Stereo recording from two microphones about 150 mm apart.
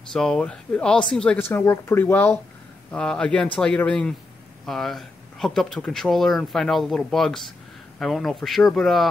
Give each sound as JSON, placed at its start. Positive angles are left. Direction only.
{"t": 0.1, "sound": "speech", "side_deg": 5}